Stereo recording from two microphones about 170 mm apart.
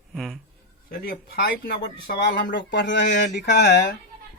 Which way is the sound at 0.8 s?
60° left (ahead or behind).